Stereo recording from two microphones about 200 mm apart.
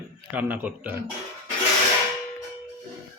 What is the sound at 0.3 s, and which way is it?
Speech, 10° right (ahead or behind).